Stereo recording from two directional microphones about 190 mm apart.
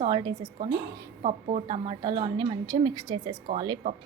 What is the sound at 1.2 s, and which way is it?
Speech, 35° right (ahead or behind).